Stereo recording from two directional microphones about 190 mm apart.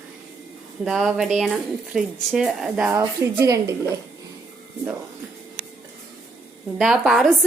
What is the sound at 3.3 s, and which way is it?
Speech, 15° right (ahead or behind).